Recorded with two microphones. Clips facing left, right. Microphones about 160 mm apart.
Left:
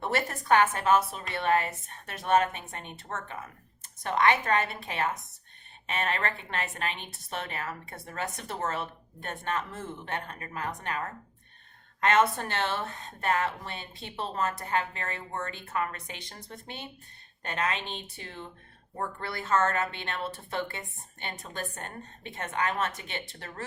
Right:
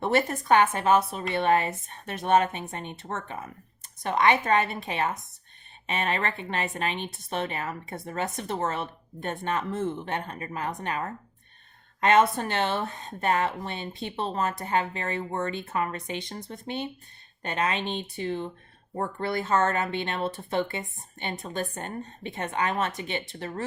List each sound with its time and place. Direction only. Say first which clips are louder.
0.0 s a woman's voice: right 6 dB; 20° right (ahead or behind)